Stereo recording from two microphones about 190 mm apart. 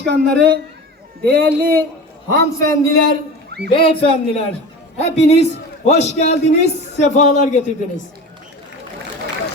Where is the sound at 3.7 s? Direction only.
30° left (ahead or behind).